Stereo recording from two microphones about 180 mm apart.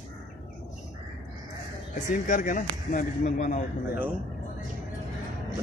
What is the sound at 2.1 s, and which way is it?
Speech, 45° left (ahead or behind).